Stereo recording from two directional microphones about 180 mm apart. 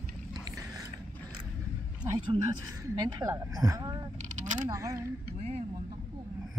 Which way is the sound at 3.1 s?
20° right (ahead or behind).